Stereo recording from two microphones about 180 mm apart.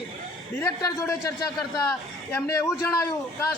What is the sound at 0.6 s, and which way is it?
A man's voice, 15° left (ahead or behind).